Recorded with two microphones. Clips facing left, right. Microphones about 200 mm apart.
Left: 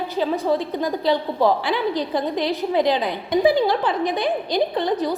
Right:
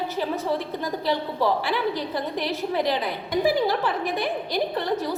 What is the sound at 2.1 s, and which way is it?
A woman's voice, 15° left (ahead or behind).